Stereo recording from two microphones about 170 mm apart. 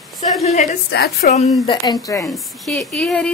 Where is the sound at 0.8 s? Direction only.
80° left.